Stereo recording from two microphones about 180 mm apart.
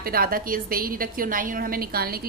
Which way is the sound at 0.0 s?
55° right (ahead or behind).